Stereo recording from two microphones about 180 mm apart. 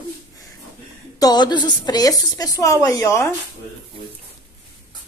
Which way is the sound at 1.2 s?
25° left (ahead or behind).